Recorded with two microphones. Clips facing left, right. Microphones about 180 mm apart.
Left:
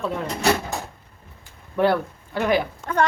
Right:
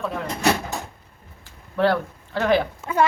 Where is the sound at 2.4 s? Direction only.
15° left (ahead or behind).